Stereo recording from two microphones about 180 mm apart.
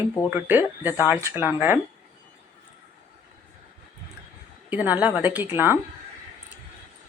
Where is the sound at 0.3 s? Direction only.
10° right (ahead or behind).